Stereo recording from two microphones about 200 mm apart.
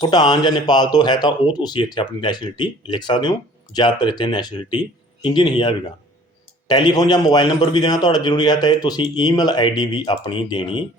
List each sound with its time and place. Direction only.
0.0 s a man's voice: 20° left (ahead or behind)